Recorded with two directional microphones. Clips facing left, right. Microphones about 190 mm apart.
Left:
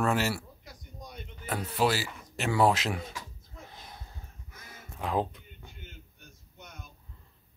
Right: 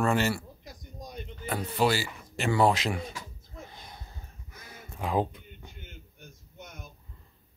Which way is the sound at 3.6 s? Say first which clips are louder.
Right 1 dB; centre (ahead or behind).